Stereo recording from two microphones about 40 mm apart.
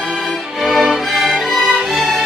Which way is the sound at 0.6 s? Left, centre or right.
Centre.